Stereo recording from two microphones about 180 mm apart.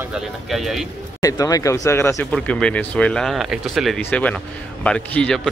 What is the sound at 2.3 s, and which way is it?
Speech, 5° left (ahead or behind).